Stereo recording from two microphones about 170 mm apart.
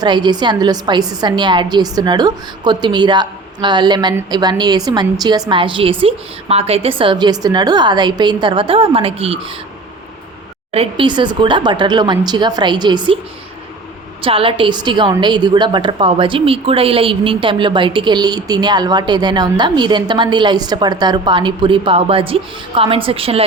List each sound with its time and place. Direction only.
0.0 s a woman's voice: 25° right (ahead or behind)
10.7 s a woman's voice: 35° right (ahead or behind)
14.2 s a woman's voice: 30° right (ahead or behind)